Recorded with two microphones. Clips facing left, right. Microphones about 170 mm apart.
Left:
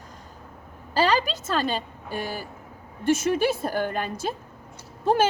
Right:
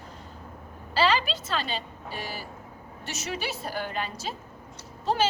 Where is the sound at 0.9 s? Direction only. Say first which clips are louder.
Left 2 dB; 45° left (ahead or behind).